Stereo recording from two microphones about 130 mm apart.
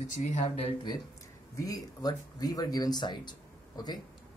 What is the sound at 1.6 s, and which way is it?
Speech, 30° left (ahead or behind).